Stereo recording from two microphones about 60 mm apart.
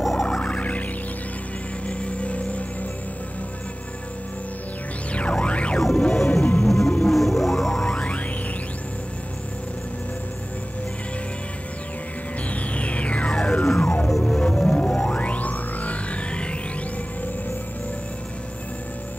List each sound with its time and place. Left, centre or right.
0.0 s music: centre
0.4 s music: left
1.9 s music: left
5.1 s music: centre
5.8 s music: centre
7.8 s music: centre
12.4 s music: left
15.1 s music: left